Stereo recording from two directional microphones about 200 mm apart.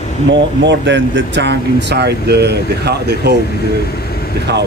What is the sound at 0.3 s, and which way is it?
Speech, 65° right (ahead or behind).